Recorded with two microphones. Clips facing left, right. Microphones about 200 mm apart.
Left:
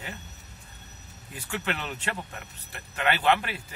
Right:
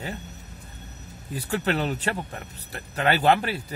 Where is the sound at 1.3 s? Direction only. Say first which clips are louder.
Right 7 dB; 35° right (ahead or behind).